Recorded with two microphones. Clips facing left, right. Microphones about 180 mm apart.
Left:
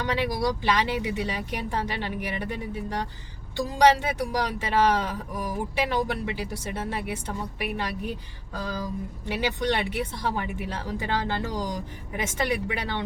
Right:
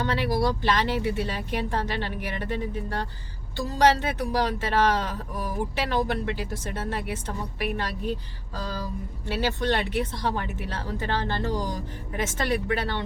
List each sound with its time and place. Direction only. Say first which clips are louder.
0.0 s speech: right 1 dB; 15° left (ahead or behind)